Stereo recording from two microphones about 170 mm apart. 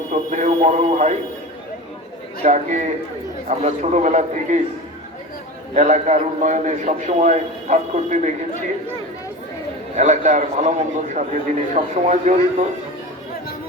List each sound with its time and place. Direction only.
0.1 s a man's voice: 45° right (ahead or behind)
2.4 s a man's voice: 45° right (ahead or behind)
5.7 s a man's voice: 45° right (ahead or behind)
9.9 s a man's voice: 45° right (ahead or behind)